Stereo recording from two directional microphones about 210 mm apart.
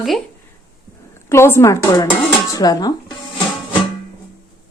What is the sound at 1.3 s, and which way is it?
Speech, 10° left (ahead or behind).